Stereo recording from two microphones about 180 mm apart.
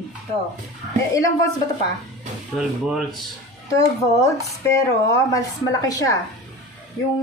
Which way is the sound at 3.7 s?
20° left (ahead or behind).